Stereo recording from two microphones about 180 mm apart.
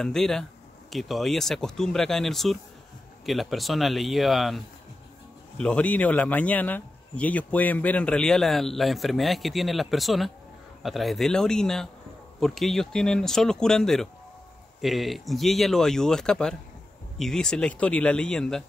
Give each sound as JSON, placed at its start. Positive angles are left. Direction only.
{"t": 0.0, "sound": "a man's voice", "side_deg": 5}